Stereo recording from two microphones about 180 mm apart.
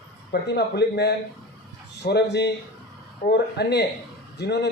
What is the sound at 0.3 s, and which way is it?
A man's voice, 65° left (ahead or behind).